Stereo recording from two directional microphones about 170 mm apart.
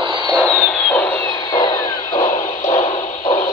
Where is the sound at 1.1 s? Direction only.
20° left (ahead or behind).